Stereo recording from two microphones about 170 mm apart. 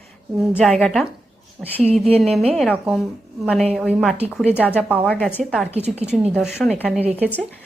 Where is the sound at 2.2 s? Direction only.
Centre (ahead or behind).